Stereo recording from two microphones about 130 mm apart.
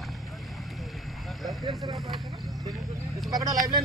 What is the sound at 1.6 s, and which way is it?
Vehicle, 30° right (ahead or behind).